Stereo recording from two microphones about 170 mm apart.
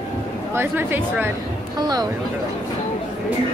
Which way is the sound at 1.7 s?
25° right (ahead or behind).